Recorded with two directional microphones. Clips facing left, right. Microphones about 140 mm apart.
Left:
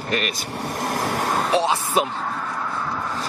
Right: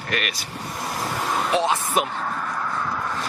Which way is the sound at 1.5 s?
30° left (ahead or behind).